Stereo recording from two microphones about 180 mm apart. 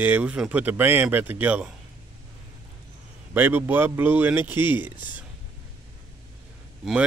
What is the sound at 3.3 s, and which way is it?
Speech, 10° right (ahead or behind).